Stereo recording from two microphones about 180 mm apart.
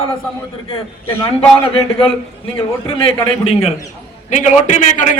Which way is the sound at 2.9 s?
30° left (ahead or behind).